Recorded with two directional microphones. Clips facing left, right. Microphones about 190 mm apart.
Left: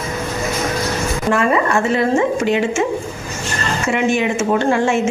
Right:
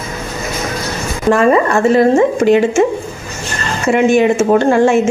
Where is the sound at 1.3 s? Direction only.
40° right (ahead or behind).